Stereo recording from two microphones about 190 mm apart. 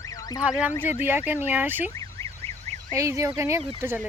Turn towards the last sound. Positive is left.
turn(degrees=-10)  # may be behind; listen again after turning